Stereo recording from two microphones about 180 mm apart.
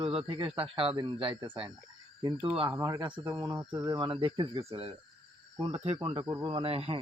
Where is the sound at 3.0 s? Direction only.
25° right (ahead or behind).